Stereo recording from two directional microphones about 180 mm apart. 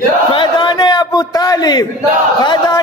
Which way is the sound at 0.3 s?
25° left (ahead or behind).